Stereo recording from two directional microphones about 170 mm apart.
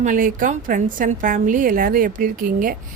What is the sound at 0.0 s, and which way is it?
A woman's voice, 50° right (ahead or behind).